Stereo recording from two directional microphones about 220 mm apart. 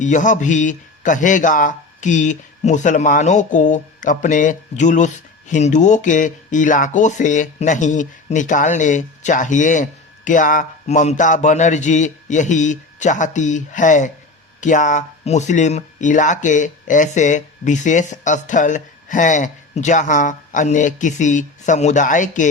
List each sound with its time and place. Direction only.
0.0 s a man's voice: 35° left (ahead or behind)